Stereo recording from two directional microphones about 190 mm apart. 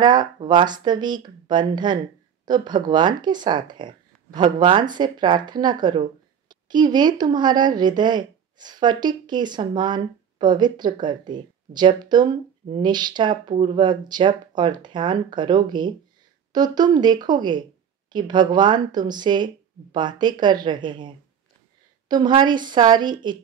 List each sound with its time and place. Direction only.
0.0 s speech: 20° right (ahead or behind)